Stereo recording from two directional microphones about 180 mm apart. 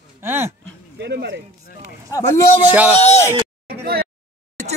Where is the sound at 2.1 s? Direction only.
20° left (ahead or behind).